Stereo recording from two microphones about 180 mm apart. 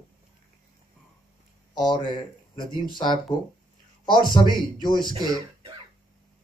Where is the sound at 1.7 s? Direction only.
25° left (ahead or behind).